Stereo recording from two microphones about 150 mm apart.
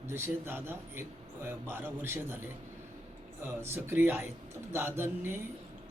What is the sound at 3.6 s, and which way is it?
A man's voice, 15° right (ahead or behind).